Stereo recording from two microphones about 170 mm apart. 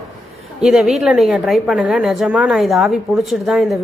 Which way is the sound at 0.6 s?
Centre (ahead or behind).